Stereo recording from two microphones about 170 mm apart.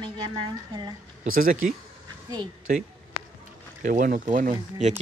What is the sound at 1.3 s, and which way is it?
Speech, 55° right (ahead or behind).